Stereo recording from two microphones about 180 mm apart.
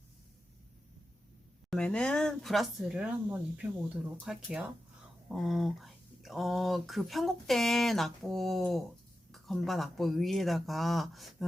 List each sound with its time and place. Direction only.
1.7 s speech: 5° left (ahead or behind)